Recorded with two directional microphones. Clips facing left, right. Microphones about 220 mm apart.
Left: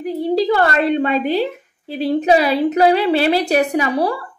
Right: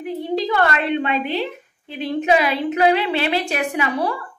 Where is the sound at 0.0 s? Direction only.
35° left (ahead or behind).